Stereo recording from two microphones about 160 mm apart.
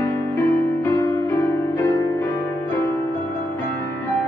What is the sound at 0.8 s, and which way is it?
Music, 15° left (ahead or behind).